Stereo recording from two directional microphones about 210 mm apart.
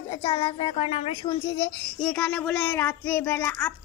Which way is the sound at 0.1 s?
25° left (ahead or behind).